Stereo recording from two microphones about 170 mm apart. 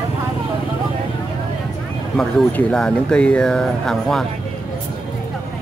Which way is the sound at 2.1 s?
5° left (ahead or behind).